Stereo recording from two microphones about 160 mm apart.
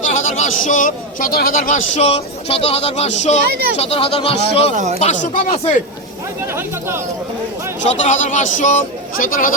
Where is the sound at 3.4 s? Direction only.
85° right.